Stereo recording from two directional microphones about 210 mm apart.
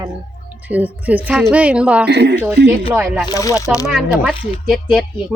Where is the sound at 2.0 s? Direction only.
55° right (ahead or behind).